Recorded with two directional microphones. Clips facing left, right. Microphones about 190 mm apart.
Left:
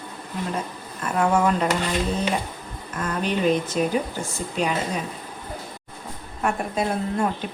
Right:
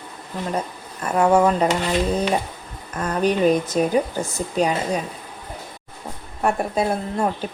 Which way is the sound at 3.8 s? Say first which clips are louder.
Right 3 dB; 40° right (ahead or behind).